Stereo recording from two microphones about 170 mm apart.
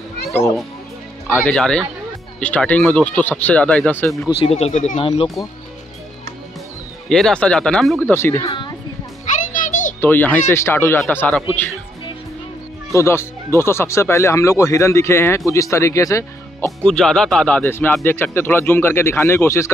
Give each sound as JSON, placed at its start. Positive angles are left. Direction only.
{"t": 1.2, "sound": "speech", "side_deg": 5}
{"t": 4.3, "sound": "speech", "side_deg": 35}
{"t": 4.9, "sound": "speech", "side_deg": 35}
{"t": 7.1, "sound": "speech", "side_deg": 5}
{"t": 8.1, "sound": "speech", "side_deg": 15}
{"t": 9.4, "sound": "music", "side_deg": 50}
{"t": 9.9, "sound": "speech", "side_deg": 10}
{"t": 12.9, "sound": "speech", "side_deg": 15}
{"t": 16.8, "sound": "speech", "side_deg": 5}